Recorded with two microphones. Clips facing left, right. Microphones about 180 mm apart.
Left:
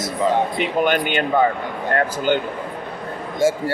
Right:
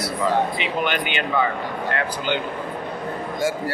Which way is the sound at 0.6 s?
45° left (ahead or behind).